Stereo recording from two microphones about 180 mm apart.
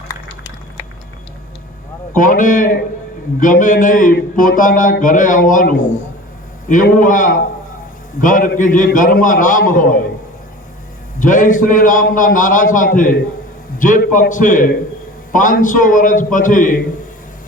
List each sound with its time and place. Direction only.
2.1 s speech: 45° left (ahead or behind)
11.2 s speech: 45° left (ahead or behind)